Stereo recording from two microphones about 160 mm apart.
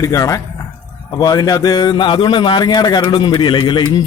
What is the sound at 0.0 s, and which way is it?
A man's voice, 20° left (ahead or behind).